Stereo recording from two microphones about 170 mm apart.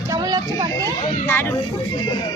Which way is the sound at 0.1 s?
20° right (ahead or behind).